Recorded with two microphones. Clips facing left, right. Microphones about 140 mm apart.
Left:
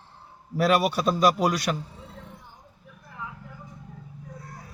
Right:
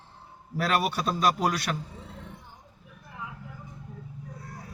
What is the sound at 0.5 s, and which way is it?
Speech, 5° left (ahead or behind).